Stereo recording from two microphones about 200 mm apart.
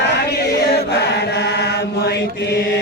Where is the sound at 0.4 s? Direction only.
55° left (ahead or behind).